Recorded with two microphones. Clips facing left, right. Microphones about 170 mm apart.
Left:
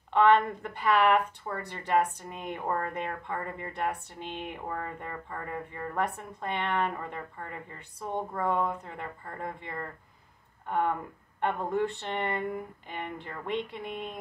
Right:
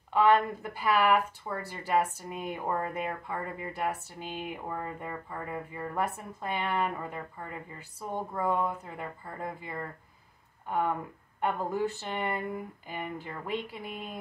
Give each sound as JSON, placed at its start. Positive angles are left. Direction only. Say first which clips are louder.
{"t": 0.1, "sound": "speech", "louder": "left 1 dB", "side_deg": -5}
{"t": 11.4, "sound": "speech", "louder": "left 1 dB", "side_deg": -5}